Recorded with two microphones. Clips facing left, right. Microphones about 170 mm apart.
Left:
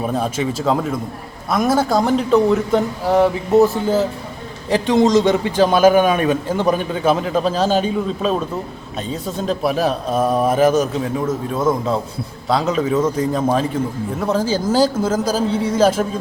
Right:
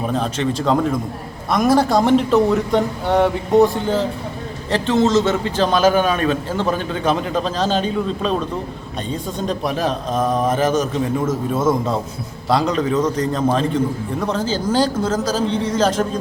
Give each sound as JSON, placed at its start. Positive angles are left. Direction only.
{"t": 0.1, "sound": "a man's voice", "side_deg": 10}
{"t": 11.3, "sound": "a man's voice", "side_deg": 0}